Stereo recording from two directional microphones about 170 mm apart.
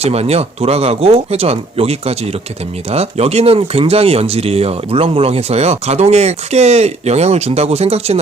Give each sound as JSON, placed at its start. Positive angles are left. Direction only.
{"t": 0.0, "sound": "speech", "side_deg": -35}